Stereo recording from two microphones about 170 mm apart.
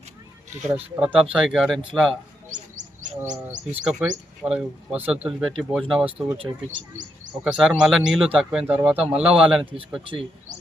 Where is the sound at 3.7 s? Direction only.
5° right (ahead or behind).